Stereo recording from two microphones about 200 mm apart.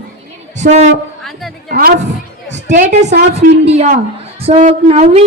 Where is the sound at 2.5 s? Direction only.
40° right (ahead or behind).